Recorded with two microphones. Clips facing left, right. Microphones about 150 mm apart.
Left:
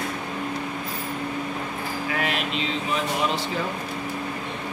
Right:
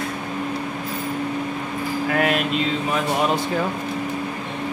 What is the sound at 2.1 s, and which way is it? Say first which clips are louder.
Speech: right 7 dB; 50° right (ahead or behind).